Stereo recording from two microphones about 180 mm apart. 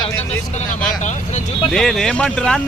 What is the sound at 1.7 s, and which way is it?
Speech, 5° left (ahead or behind).